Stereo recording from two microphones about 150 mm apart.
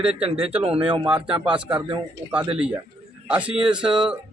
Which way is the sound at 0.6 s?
40° right (ahead or behind).